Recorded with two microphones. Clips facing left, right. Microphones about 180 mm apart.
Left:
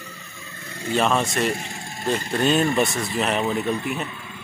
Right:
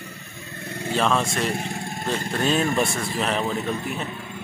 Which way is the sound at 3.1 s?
5° left (ahead or behind).